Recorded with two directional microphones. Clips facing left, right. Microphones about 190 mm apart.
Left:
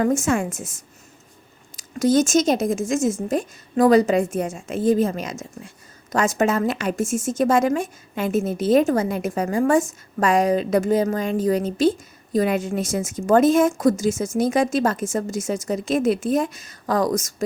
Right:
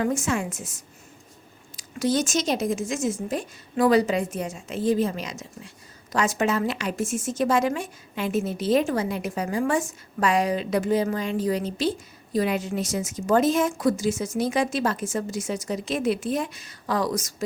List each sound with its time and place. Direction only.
0.0 s speech: 45° left (ahead or behind)